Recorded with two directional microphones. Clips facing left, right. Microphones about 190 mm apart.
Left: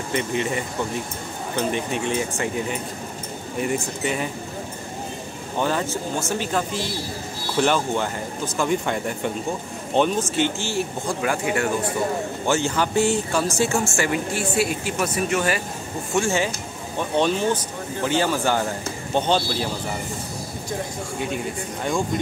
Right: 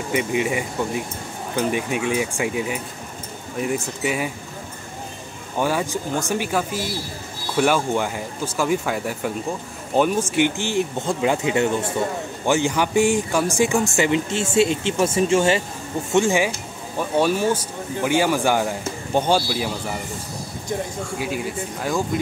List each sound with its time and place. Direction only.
0.1 s speech: 10° right (ahead or behind)
5.6 s speech: 10° right (ahead or behind)
21.8 s speech: 5° right (ahead or behind)